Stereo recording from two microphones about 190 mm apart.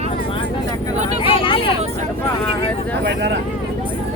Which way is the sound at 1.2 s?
30° left (ahead or behind).